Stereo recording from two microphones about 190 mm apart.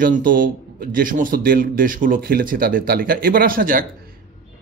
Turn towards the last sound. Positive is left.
turn(degrees=-50)  # may be behind; listen again after turning